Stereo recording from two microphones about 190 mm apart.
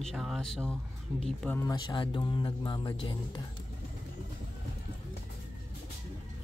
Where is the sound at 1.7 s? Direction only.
25° left (ahead or behind).